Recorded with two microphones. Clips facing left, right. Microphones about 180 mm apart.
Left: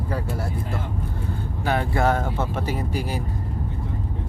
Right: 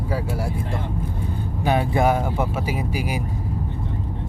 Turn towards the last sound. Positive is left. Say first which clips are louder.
# right 1 dB
turn(degrees=-10)  # may be behind; listen again after turning